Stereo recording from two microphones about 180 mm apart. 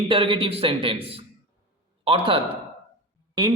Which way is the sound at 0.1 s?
30° right (ahead or behind).